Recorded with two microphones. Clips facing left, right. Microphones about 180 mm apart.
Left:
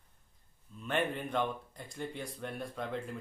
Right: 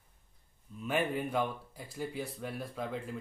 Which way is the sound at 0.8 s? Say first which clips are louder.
Right 2 dB; 5° right (ahead or behind).